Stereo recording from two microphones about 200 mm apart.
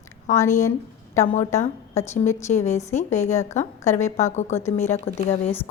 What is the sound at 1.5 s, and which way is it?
Speech, 15° left (ahead or behind).